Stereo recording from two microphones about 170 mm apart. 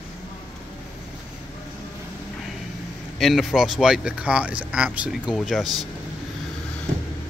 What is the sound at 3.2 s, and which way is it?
Speech, centre (ahead or behind).